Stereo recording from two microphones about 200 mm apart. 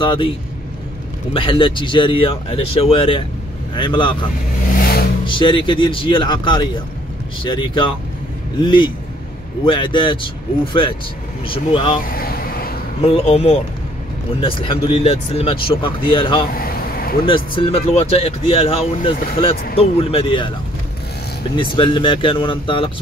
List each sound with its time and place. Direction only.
0.0 s speech: 25° left (ahead or behind)
1.3 s speech: 25° left (ahead or behind)
4.6 s vehicle: 45° left (ahead or behind)
5.2 s speech: 25° left (ahead or behind)
12.0 s vehicle: 45° left (ahead or behind)
13.0 s speech: 30° left (ahead or behind)
16.5 s vehicle: 45° left (ahead or behind)
17.3 s speech: 30° left (ahead or behind)
21.5 s speech: 25° left (ahead or behind)